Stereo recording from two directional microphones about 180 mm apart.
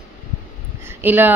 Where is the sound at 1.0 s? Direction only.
10° right (ahead or behind).